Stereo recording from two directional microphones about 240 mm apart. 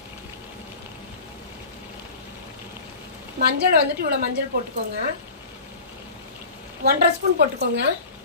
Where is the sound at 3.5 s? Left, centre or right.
Right.